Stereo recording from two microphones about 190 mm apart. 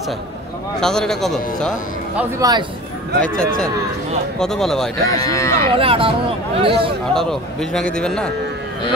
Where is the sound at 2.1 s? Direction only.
15° right (ahead or behind).